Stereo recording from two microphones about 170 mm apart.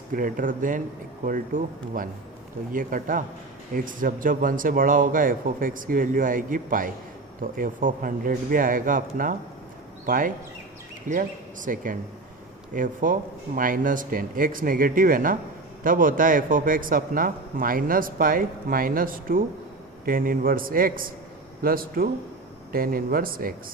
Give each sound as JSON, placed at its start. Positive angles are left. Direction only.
{"t": 0.1, "sound": "a man's voice", "side_deg": -55}